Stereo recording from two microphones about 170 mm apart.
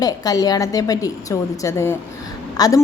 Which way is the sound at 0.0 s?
20° left (ahead or behind).